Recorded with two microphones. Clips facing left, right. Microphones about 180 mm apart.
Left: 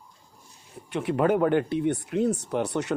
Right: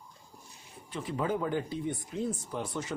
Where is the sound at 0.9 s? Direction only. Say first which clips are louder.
Left 9 dB; 70° left (ahead or behind).